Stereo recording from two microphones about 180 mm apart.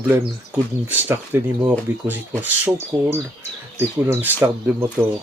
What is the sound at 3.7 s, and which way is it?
Speech, 15° right (ahead or behind).